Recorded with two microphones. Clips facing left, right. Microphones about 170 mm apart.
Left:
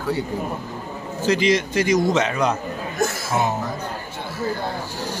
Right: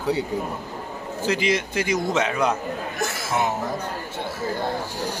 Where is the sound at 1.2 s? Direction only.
10° right (ahead or behind).